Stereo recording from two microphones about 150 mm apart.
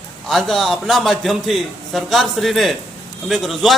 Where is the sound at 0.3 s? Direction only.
Centre (ahead or behind).